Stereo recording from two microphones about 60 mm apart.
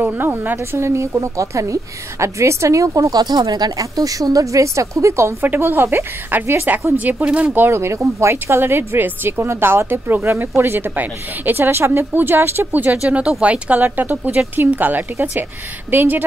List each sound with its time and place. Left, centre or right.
0.0 s a woman's voice: right
0.7 s a woman's voice: right
5.4 s a woman's voice: right
7.2 s speech: centre
7.5 s a woman's voice: right